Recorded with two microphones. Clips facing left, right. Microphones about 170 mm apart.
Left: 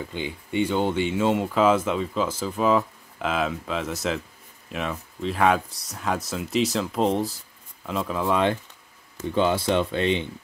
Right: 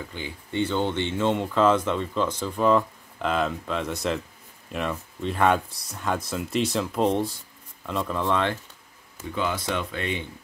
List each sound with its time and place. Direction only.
0.1 s speech: 20° left (ahead or behind)
9.3 s speech: 30° left (ahead or behind)